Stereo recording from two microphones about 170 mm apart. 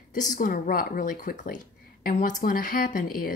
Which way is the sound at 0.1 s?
50° left (ahead or behind).